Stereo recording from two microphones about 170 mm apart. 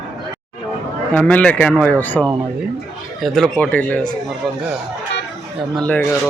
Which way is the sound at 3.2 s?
Centre (ahead or behind).